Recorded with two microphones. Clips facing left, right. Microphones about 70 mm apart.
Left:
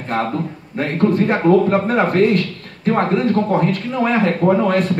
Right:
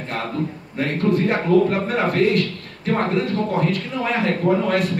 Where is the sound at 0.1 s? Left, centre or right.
Left.